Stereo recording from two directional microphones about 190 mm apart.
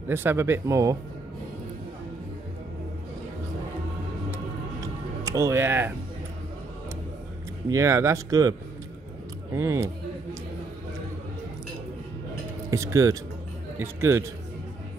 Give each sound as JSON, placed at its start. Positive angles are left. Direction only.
{"t": 0.1, "sound": "speech", "side_deg": -10}
{"t": 5.2, "sound": "speech", "side_deg": -15}
{"t": 7.7, "sound": "speech", "side_deg": -15}
{"t": 12.7, "sound": "speech", "side_deg": -15}